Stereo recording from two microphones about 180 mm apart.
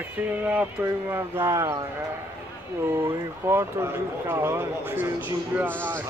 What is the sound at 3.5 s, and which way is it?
Speech, 10° right (ahead or behind).